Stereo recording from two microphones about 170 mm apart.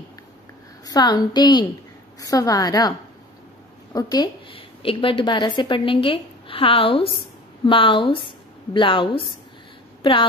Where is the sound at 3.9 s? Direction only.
25° left (ahead or behind).